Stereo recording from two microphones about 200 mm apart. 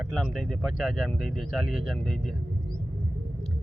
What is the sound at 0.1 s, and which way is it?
Speech, centre (ahead or behind).